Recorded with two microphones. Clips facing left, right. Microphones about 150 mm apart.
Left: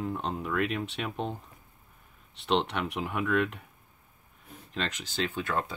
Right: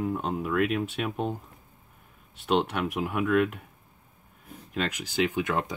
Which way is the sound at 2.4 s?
5° right (ahead or behind).